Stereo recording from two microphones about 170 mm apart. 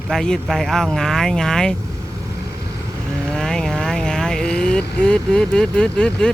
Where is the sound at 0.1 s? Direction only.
Centre (ahead or behind).